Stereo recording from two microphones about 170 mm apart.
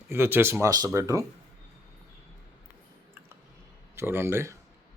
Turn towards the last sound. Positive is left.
turn(degrees=-15)  # may be behind; listen again after turning